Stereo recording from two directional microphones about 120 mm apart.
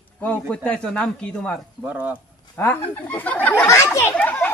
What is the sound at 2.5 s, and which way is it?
A child's voice, 15° left (ahead or behind).